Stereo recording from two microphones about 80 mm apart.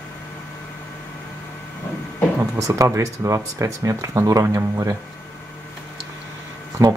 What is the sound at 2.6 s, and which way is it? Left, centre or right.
Speech, right.